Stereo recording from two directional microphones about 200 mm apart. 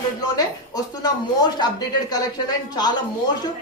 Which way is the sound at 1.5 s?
20° left (ahead or behind).